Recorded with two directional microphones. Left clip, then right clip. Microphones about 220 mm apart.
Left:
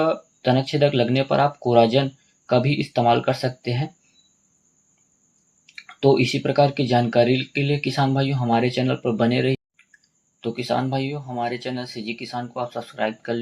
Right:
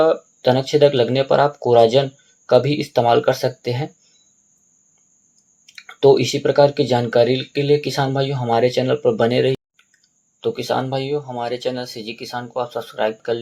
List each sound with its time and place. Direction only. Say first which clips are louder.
0.0 s speech: right 6 dB; 25° right (ahead or behind)
5.7 s speech: right 5 dB; 25° right (ahead or behind)